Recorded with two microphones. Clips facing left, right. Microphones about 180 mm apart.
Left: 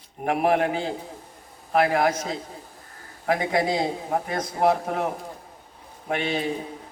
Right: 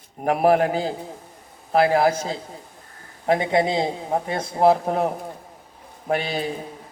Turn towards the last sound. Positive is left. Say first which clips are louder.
# right 2 dB
turn(degrees=-40)  # may be behind; listen again after turning